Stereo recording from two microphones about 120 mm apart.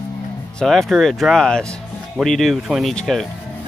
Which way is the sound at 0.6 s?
Centre (ahead or behind).